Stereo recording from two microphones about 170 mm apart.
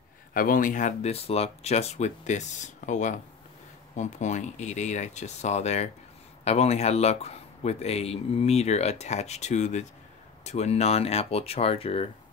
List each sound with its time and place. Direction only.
0.3 s speech: 55° left (ahead or behind); by 12.1 s 35° left (ahead or behind)